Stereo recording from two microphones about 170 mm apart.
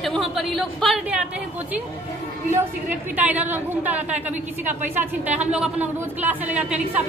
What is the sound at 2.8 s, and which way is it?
Speech, 10° right (ahead or behind).